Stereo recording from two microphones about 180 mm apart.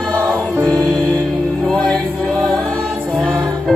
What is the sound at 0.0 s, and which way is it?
Music, 5° left (ahead or behind).